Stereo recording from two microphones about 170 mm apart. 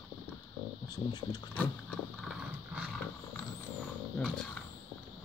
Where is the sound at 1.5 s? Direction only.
10° left (ahead or behind).